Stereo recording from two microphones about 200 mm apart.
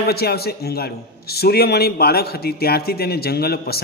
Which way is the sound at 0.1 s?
50° left (ahead or behind).